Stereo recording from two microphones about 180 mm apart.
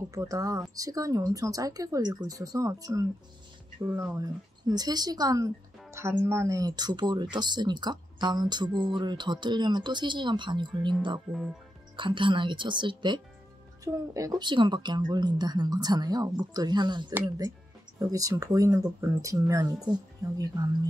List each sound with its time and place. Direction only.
0.1 s speech: 20° right (ahead or behind)